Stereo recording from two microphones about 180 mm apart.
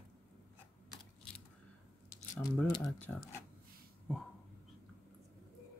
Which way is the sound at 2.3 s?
15° left (ahead or behind).